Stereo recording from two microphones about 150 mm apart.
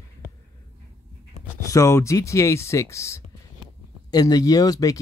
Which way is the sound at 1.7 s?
20° left (ahead or behind).